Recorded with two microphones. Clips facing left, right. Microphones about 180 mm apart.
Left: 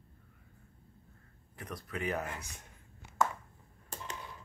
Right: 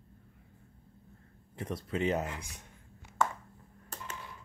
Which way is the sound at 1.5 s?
25° right (ahead or behind).